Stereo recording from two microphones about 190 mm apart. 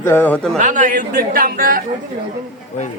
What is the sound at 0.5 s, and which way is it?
Speech, 40° right (ahead or behind).